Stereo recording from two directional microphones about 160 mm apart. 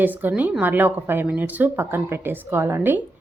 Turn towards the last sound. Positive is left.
turn(degrees=-15)  # may be behind; listen again after turning